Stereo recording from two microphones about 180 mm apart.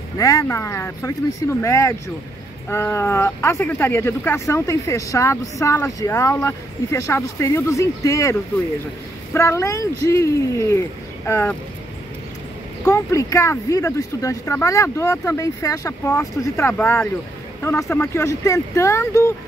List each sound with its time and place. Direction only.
0.2 s speech: 20° left (ahead or behind)
12.8 s speech: 15° left (ahead or behind)